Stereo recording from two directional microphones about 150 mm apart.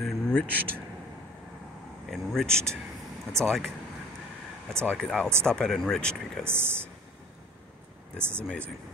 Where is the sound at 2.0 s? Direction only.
Centre (ahead or behind).